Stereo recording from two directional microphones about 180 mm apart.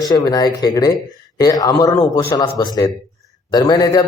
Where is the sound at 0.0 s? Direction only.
20° left (ahead or behind).